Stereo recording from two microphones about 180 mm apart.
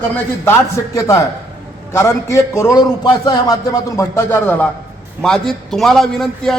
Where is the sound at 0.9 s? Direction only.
15° left (ahead or behind).